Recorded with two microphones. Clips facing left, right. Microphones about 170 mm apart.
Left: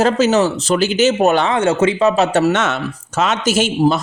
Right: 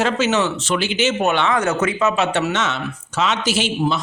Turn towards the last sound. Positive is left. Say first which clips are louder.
# left 5 dB
turn(degrees=45)  # may be behind; listen again after turning